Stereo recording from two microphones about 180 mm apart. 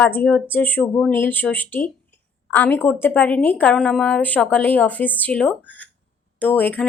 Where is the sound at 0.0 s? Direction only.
10° left (ahead or behind).